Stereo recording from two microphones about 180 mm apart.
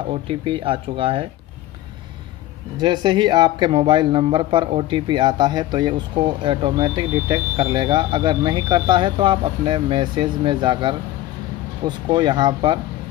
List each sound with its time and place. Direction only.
0.3 s speech: 30° right (ahead or behind)
2.8 s speech: 25° right (ahead or behind)
12.1 s speech: 25° right (ahead or behind)